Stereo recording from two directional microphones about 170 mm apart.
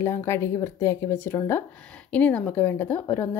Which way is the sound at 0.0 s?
15° left (ahead or behind).